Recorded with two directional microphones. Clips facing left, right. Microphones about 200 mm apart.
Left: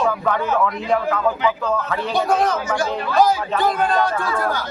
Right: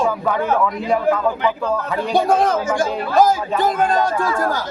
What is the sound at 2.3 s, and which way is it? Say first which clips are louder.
Speech: right 2 dB; 50° right (ahead or behind).